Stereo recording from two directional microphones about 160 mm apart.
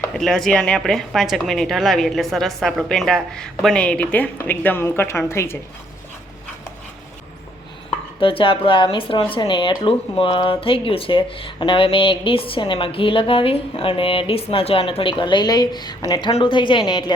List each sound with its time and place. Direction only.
0.1 s speech: 5° left (ahead or behind)
8.2 s speech: 35° left (ahead or behind)